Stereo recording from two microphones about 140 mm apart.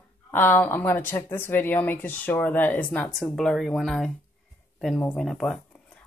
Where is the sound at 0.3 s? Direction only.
15° left (ahead or behind).